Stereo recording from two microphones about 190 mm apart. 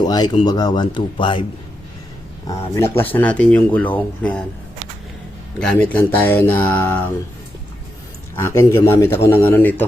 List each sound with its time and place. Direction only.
0.0 s speech: 20° left (ahead or behind)
3.0 s speech: 10° left (ahead or behind)
5.5 s speech: 5° left (ahead or behind)
8.4 s speech: 15° left (ahead or behind)